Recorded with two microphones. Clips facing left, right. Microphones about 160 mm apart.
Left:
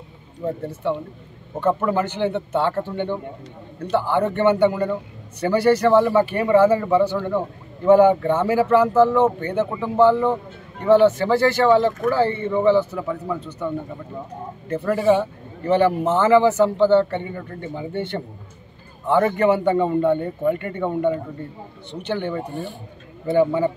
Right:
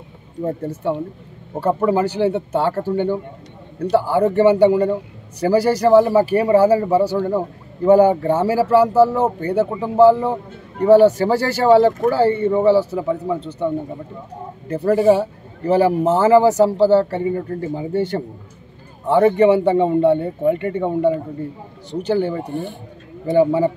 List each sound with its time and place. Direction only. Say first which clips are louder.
0.5 s a man's voice: right 2 dB; 40° right (ahead or behind)
14.7 s a man's voice: right 4 dB; 35° right (ahead or behind)